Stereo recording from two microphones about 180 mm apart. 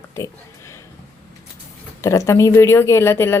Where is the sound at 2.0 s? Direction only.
15° left (ahead or behind).